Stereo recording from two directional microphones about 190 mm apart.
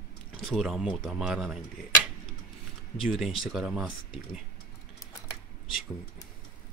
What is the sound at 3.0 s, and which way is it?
Speech, centre (ahead or behind).